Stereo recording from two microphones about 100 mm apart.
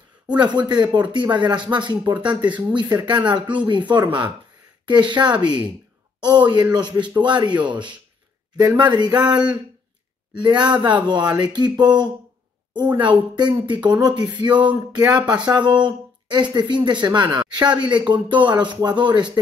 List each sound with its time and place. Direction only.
0.3 s speech: 45° right (ahead or behind)
10.4 s speech: 50° right (ahead or behind)